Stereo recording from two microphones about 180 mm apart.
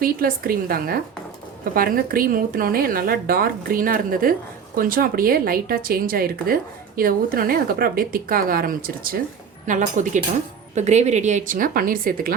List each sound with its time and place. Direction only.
0.0 s a woman's voice: 55° right (ahead or behind)